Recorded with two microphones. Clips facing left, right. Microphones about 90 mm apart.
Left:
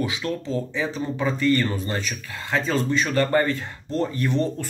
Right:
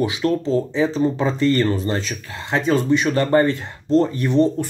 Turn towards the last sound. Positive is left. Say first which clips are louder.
# right 6 dB
turn(degrees=-20)  # may be behind; listen again after turning